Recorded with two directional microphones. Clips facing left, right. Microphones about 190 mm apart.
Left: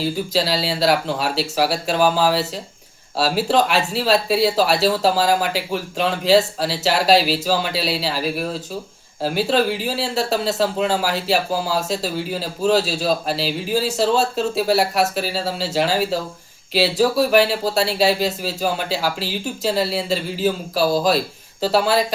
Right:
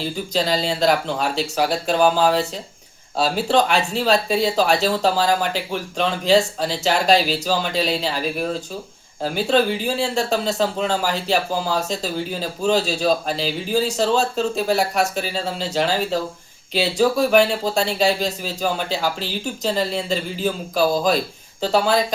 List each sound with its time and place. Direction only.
0.0 s speech: 5° left (ahead or behind)